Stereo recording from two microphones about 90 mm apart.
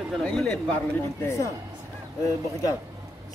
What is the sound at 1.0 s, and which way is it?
Speech, 35° left (ahead or behind).